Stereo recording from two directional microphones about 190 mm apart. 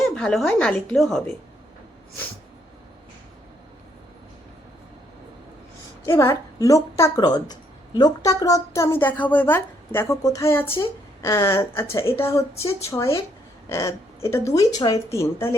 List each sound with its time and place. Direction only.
0.0 s speech: centre (ahead or behind)
6.1 s a woman's voice: 15° left (ahead or behind)